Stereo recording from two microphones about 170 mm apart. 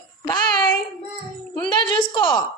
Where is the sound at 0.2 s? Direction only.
20° left (ahead or behind).